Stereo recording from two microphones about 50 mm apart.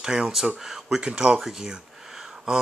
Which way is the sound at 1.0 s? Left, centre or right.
Centre.